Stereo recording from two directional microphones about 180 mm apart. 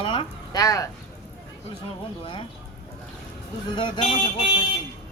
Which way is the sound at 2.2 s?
30° left (ahead or behind).